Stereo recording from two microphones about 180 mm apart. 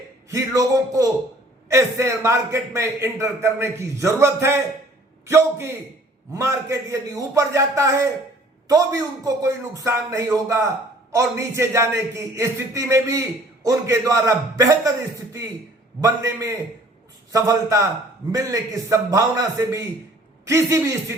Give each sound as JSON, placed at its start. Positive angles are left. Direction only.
{"t": 0.3, "sound": "a man's voice", "side_deg": -20}